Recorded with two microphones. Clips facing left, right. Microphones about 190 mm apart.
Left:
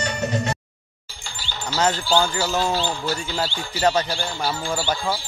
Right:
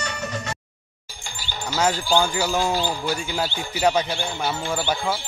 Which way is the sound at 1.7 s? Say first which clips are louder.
Even; 10° right (ahead or behind).